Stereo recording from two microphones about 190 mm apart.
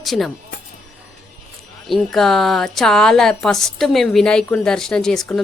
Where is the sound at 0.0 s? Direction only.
Centre (ahead or behind).